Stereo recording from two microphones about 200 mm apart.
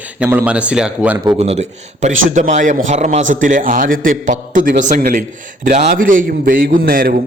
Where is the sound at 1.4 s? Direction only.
30° right (ahead or behind).